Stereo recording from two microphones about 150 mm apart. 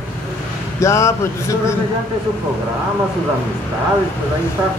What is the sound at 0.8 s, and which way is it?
Speech, 20° left (ahead or behind).